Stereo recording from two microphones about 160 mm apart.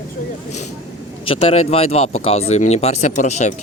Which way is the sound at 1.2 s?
35° left (ahead or behind).